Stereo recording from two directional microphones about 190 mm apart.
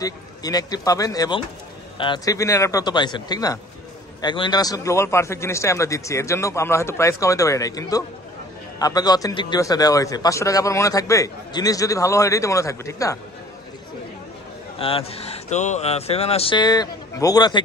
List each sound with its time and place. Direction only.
0.0 s a man's voice: 20° left (ahead or behind)
14.8 s speech: 30° left (ahead or behind)